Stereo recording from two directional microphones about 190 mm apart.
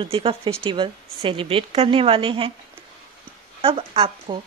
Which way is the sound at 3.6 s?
30° right (ahead or behind).